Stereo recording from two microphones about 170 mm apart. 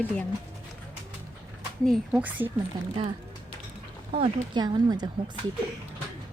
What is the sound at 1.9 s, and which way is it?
Speech, 10° right (ahead or behind).